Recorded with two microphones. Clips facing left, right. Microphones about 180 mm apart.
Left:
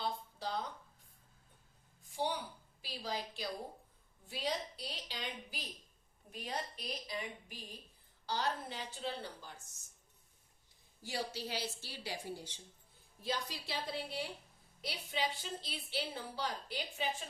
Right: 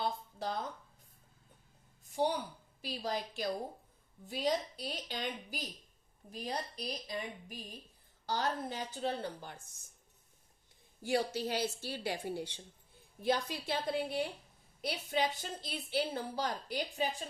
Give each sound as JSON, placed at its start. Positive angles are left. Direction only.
{"t": 0.0, "sound": "a sound", "side_deg": -50}
{"t": 2.8, "sound": "a woman's voice", "side_deg": -45}
{"t": 11.0, "sound": "a woman's voice", "side_deg": -55}